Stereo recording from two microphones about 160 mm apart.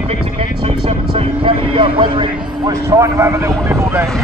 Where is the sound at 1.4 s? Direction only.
30° right (ahead or behind).